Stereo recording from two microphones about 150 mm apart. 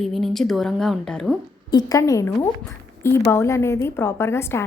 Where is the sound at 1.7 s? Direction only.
20° left (ahead or behind).